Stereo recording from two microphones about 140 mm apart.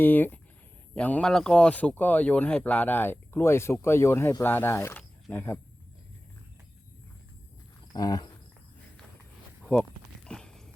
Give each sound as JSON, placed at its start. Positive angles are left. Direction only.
{"t": 0.0, "sound": "speech", "side_deg": 15}
{"t": 7.9, "sound": "cricket", "side_deg": 25}
{"t": 10.2, "sound": "clip-clop", "side_deg": 5}